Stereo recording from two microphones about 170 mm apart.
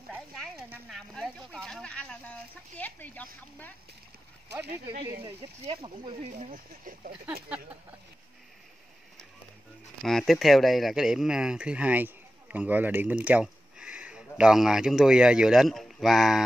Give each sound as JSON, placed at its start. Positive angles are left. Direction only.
{"t": 0.3, "sound": "a sound", "side_deg": 0}
{"t": 0.8, "sound": "speech", "side_deg": 0}
{"t": 5.2, "sound": "speech", "side_deg": -30}
{"t": 10.0, "sound": "speech", "side_deg": 0}